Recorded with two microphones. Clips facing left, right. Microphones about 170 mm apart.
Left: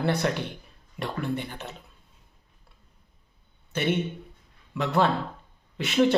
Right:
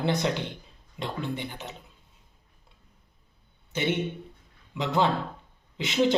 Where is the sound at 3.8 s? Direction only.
15° right (ahead or behind).